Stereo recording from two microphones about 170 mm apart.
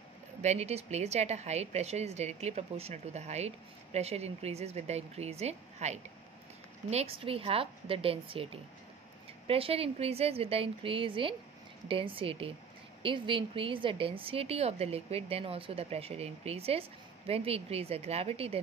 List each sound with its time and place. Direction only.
0.4 s a woman's voice: 40° right (ahead or behind)
9.5 s a woman's voice: 35° right (ahead or behind)